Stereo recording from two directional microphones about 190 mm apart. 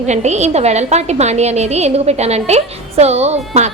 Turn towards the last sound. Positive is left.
turn(degrees=-35)  # may be behind; listen again after turning